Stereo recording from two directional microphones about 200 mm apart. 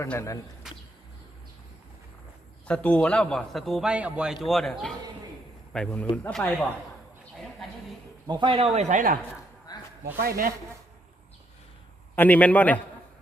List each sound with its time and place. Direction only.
0.0 s a man's voice: 15° left (ahead or behind)
2.6 s a man's voice: 5° left (ahead or behind)
7.3 s a sound: centre (ahead or behind)
8.3 s speech: 25° right (ahead or behind)
10.2 s speech: 45° right (ahead or behind)
12.1 s a man's voice: 10° left (ahead or behind)